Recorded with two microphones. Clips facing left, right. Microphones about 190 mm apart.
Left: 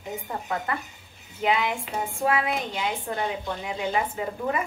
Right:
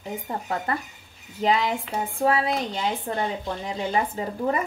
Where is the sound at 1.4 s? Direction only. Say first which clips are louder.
Right 2 dB; 35° right (ahead or behind).